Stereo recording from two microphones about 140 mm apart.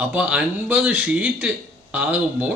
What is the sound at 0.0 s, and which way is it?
Speech, 10° right (ahead or behind).